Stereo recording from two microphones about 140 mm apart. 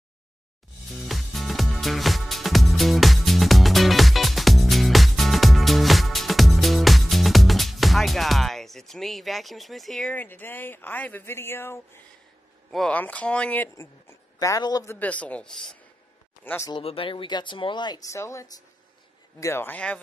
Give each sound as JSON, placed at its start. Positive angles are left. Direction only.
{"t": 1.0, "sound": "music", "side_deg": 0}
{"t": 12.7, "sound": "speech", "side_deg": 10}
{"t": 15.0, "sound": "speech", "side_deg": 10}
{"t": 16.4, "sound": "speech", "side_deg": 20}
{"t": 16.7, "sound": "speech", "side_deg": 40}